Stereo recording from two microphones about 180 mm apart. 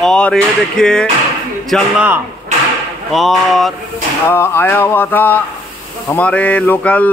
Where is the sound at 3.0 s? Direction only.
Centre (ahead or behind).